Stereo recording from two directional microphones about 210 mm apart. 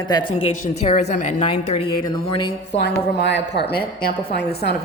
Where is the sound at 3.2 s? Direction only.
55° left (ahead or behind).